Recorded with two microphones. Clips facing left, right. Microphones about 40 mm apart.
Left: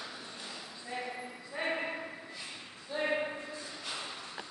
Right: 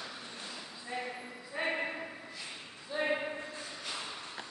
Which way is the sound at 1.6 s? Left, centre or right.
Centre.